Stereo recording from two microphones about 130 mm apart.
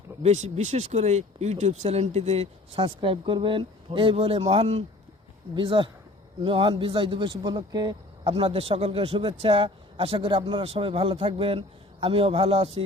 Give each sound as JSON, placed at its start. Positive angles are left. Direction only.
{"t": 0.2, "sound": "a man's voice", "side_deg": -60}